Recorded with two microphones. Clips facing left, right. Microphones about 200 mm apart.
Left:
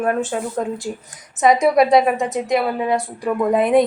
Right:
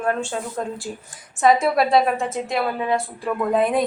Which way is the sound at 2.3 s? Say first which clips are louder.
Left 4 dB; centre (ahead or behind).